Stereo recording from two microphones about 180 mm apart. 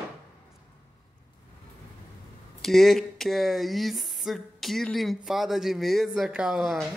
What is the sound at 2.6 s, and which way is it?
Speech, centre (ahead or behind).